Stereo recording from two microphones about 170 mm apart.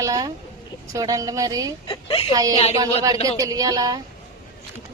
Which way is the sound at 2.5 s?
40° left (ahead or behind).